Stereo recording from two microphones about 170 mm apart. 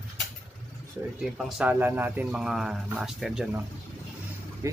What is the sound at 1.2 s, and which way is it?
Speech, 5° right (ahead or behind).